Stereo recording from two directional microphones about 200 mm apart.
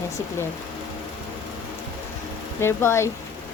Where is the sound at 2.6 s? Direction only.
10° left (ahead or behind).